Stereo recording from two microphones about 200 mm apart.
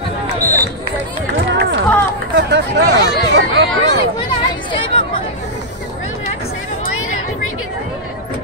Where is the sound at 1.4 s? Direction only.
60° right (ahead or behind).